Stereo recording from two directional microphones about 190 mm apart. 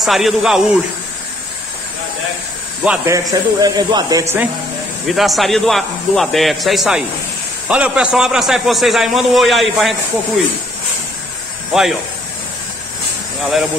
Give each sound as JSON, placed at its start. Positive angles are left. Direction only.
{"t": 0.0, "sound": "a man's voice", "side_deg": 0}
{"t": 3.1, "sound": "speech", "side_deg": -20}
{"t": 5.0, "sound": "a man's voice", "side_deg": 0}